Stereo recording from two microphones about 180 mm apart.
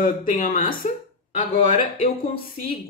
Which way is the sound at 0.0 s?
50° left (ahead or behind).